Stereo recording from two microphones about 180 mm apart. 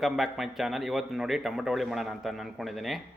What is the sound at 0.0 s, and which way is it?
A man's voice, centre (ahead or behind).